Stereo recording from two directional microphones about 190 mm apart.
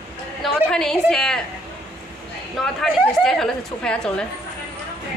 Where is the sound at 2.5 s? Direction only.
5° left (ahead or behind).